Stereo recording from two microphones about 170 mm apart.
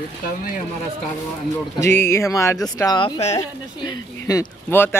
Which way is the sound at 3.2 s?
40° left (ahead or behind).